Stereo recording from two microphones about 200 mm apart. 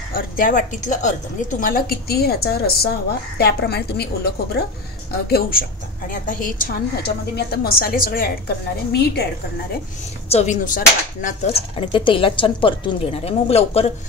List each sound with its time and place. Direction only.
0.1 s a woman's voice: 45° left (ahead or behind)
5.3 s a woman's voice: 45° left (ahead or behind)
10.3 s speech: 40° left (ahead or behind)